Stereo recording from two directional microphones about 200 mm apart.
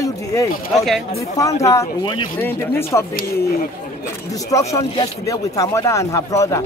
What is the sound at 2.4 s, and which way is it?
Speech, 10° left (ahead or behind).